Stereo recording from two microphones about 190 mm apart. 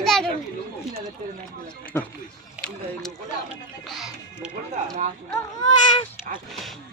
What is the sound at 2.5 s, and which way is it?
Speech, 5° left (ahead or behind).